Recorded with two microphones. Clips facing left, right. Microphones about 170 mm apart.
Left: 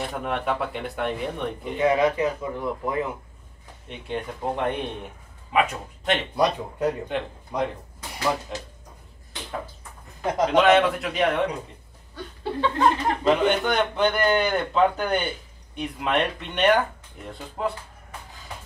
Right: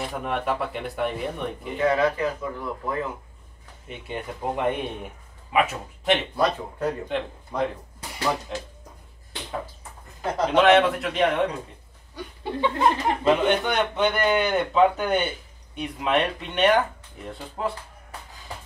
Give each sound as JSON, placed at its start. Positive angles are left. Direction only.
{"t": 0.1, "sound": "speech", "side_deg": 0}
{"t": 1.8, "sound": "speech", "side_deg": 15}
{"t": 3.8, "sound": "a man's voice", "side_deg": -5}
{"t": 6.3, "sound": "speech", "side_deg": 15}
{"t": 7.1, "sound": "speech", "side_deg": 0}
{"t": 10.2, "sound": "speech", "side_deg": 15}
{"t": 10.6, "sound": "speech", "side_deg": 0}
{"t": 12.2, "sound": "chuckle", "side_deg": -10}
{"t": 13.3, "sound": "speech", "side_deg": 0}